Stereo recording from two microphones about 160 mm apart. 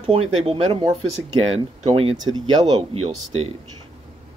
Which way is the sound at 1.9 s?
35° right (ahead or behind).